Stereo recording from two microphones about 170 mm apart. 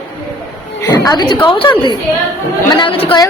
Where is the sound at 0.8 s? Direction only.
20° left (ahead or behind).